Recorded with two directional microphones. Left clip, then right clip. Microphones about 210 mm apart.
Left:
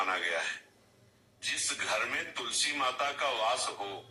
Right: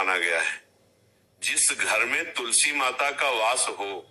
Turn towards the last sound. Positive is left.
turn(degrees=-40)  # may be behind; listen again after turning